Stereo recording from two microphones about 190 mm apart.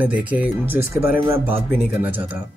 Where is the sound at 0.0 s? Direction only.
5° right (ahead or behind).